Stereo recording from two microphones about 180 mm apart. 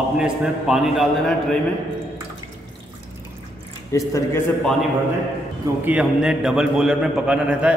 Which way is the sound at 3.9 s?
20° left (ahead or behind).